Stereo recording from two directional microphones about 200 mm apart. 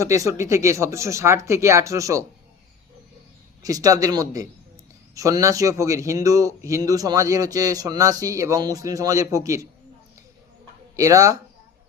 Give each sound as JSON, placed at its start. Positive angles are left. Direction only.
{"t": 0.0, "sound": "speech", "side_deg": -15}
{"t": 3.6, "sound": "speech", "side_deg": -20}
{"t": 10.9, "sound": "speech", "side_deg": -15}